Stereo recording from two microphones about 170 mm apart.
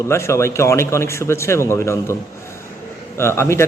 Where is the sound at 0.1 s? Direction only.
15° left (ahead or behind).